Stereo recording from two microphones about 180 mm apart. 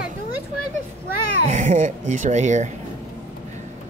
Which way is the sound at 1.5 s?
45° right (ahead or behind).